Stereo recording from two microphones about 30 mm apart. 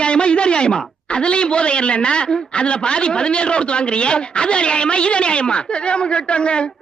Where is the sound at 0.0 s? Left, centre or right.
Left.